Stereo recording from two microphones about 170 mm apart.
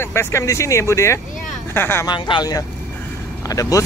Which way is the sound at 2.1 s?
25° left (ahead or behind).